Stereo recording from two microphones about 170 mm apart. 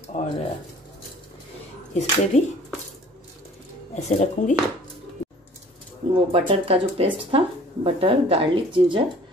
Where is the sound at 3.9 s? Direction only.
40° left (ahead or behind).